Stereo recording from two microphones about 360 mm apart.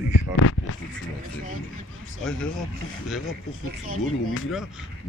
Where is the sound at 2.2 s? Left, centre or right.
Centre.